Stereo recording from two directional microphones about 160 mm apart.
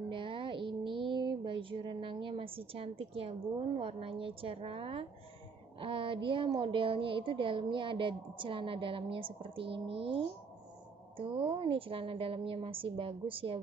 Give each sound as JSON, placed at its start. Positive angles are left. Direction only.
{"t": 0.1, "sound": "a woman's voice", "side_deg": -35}